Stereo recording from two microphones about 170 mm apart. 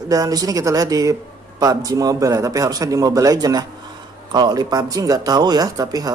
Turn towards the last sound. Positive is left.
turn(degrees=-20)  # may be behind; listen again after turning